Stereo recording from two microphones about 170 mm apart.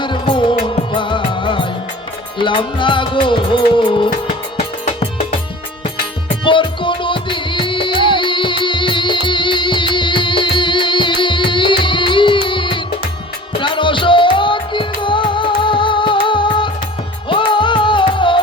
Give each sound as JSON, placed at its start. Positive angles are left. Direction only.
{"t": 0.0, "sound": "music", "side_deg": 30}
{"t": 6.2, "sound": "music", "side_deg": 30}